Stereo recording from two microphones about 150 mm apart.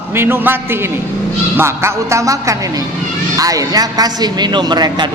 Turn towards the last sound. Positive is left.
turn(degrees=-30)  # may be behind; listen again after turning